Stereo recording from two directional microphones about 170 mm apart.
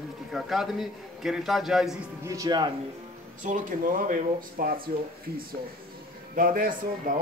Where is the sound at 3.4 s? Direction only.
50° right (ahead or behind).